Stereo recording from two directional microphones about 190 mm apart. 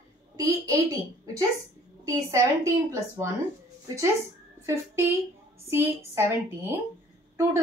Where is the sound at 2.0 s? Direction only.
15° right (ahead or behind).